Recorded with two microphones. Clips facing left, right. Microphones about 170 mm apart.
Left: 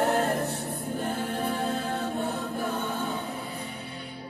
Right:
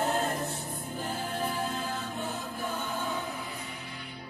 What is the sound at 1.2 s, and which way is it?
Music, 65° left (ahead or behind).